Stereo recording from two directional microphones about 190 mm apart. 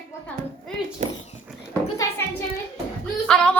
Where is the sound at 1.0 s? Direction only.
40° right (ahead or behind).